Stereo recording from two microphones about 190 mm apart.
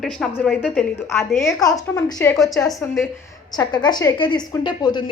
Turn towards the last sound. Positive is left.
turn(degrees=25)  # may be behind; listen again after turning